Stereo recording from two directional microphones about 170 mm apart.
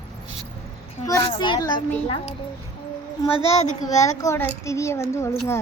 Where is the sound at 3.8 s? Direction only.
20° left (ahead or behind).